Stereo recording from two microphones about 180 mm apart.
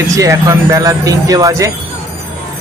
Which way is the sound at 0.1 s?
15° right (ahead or behind).